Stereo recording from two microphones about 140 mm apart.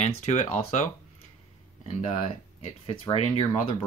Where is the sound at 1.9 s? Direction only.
50° left (ahead or behind).